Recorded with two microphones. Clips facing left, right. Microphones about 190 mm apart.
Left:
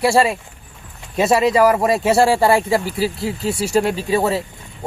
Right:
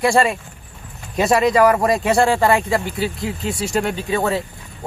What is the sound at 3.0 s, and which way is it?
Speech, 35° left (ahead or behind).